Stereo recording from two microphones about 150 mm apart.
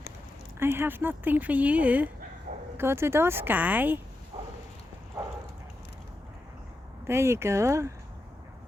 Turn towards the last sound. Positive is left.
turn(degrees=-20)  # may be behind; listen again after turning